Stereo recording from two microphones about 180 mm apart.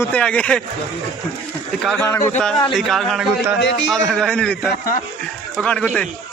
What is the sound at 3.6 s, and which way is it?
Speech, 75° left (ahead or behind).